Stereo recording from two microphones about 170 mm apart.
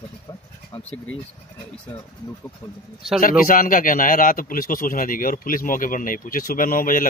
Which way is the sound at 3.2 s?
55° left (ahead or behind).